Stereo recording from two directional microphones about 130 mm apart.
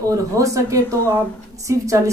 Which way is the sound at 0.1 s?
25° right (ahead or behind).